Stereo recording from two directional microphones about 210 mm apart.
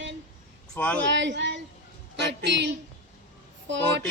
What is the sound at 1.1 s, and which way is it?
Speech, 60° right (ahead or behind).